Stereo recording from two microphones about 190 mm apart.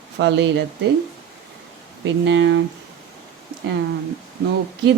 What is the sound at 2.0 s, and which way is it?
Speech, 70° right (ahead or behind).